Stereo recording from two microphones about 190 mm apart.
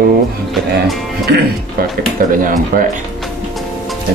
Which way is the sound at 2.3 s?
45° right (ahead or behind).